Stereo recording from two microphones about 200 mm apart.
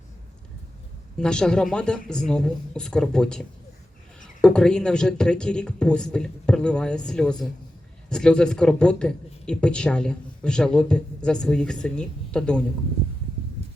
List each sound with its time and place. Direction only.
1.2 s speech: 5° left (ahead or behind)